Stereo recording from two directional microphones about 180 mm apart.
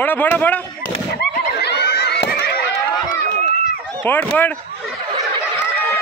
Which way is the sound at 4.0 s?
10° left (ahead or behind).